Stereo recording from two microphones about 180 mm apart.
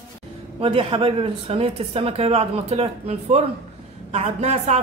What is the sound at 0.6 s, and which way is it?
Speech, 30° right (ahead or behind).